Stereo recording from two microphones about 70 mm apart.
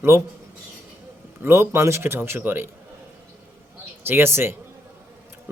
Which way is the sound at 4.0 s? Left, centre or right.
Right.